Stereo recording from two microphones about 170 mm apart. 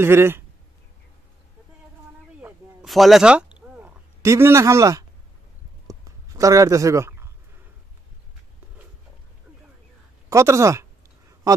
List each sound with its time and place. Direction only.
0.0 s speech: 15° right (ahead or behind)
2.8 s a sound: centre (ahead or behind); by 7.2 s 15° right (ahead or behind)
10.3 s speech: 15° right (ahead or behind)